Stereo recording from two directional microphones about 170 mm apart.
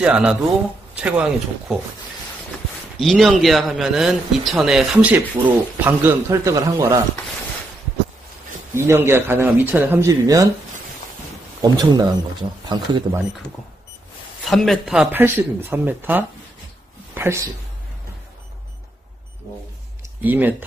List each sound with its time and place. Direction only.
0.0 s a man's voice: 5° right (ahead or behind)
3.0 s a man's voice: centre (ahead or behind); by 7.0 s 20° right (ahead or behind)
8.7 s speech: 15° right (ahead or behind)
11.6 s speech: 25° right (ahead or behind)
14.5 s a man's voice: centre (ahead or behind); by 17.5 s 15° right (ahead or behind)
20.2 s speech: 10° right (ahead or behind)